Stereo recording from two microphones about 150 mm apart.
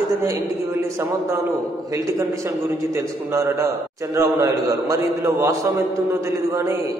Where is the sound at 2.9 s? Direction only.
20° right (ahead or behind).